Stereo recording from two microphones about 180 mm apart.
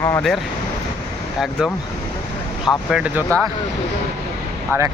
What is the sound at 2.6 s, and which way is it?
Speech, 5° right (ahead or behind).